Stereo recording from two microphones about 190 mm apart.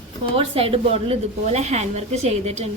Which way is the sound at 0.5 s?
30° right (ahead or behind).